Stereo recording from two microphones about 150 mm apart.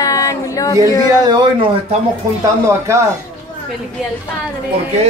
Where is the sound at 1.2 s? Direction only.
30° right (ahead or behind).